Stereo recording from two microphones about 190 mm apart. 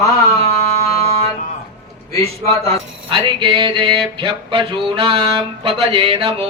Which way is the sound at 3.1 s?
25° right (ahead or behind).